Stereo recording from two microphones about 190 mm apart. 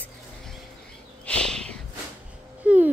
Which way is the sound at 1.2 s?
5° left (ahead or behind).